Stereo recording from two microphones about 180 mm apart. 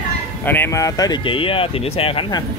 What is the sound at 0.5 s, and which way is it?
Speech, 15° left (ahead or behind).